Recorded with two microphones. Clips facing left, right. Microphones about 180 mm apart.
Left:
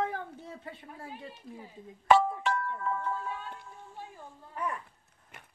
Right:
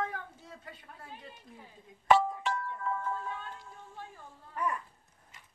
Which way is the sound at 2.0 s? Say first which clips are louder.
Left 2 dB; 75° left (ahead or behind).